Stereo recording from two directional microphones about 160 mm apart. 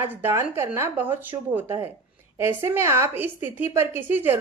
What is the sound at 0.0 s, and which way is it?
A woman's voice, 15° right (ahead or behind).